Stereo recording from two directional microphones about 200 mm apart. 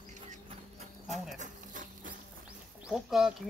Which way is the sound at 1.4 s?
40° right (ahead or behind).